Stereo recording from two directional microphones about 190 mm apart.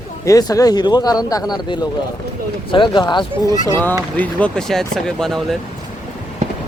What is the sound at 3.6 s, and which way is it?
Speech, 10° left (ahead or behind).